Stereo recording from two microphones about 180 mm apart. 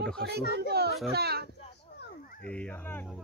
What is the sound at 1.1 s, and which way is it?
Speech, 60° right (ahead or behind).